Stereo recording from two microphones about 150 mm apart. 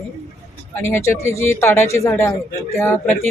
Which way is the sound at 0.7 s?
15° left (ahead or behind).